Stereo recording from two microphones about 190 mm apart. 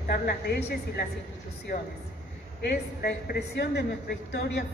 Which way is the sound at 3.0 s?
55° left (ahead or behind).